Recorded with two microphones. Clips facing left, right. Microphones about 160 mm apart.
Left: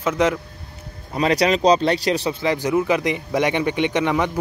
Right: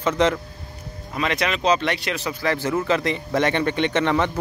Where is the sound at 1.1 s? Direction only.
35° left (ahead or behind).